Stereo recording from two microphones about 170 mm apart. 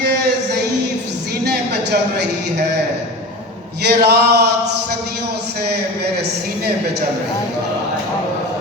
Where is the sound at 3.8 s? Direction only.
75° right (ahead or behind).